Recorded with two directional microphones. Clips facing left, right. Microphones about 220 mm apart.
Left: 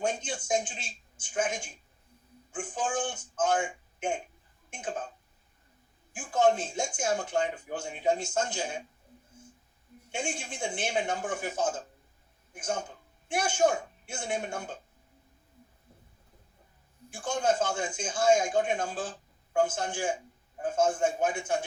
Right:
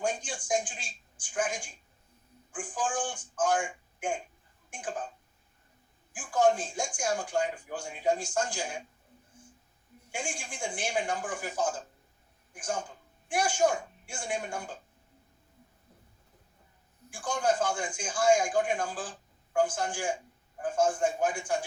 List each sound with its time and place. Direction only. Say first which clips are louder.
0.0 s a man's voice: left 1 dB; 25° left (ahead or behind)
6.1 s speech: even; 25° left (ahead or behind)
10.1 s speech: left 3 dB; 25° left (ahead or behind)
17.1 s speech: left 1 dB; 25° left (ahead or behind)